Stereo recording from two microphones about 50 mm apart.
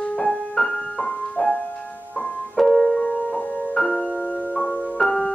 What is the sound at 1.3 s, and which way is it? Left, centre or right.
Music, left.